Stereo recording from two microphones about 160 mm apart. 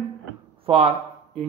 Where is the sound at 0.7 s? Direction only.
40° right (ahead or behind).